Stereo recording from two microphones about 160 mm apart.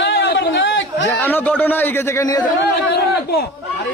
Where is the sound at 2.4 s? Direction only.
75° left (ahead or behind).